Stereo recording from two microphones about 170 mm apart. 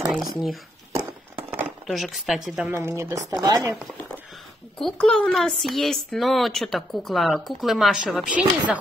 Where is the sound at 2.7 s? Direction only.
15° right (ahead or behind).